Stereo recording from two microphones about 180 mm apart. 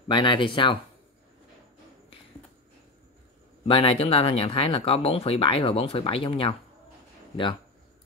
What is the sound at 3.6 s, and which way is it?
Speech, 30° left (ahead or behind).